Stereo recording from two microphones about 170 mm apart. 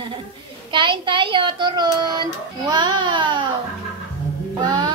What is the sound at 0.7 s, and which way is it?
Child singing, 30° right (ahead or behind).